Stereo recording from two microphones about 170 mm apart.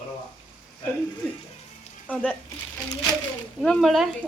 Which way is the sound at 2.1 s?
10° left (ahead or behind).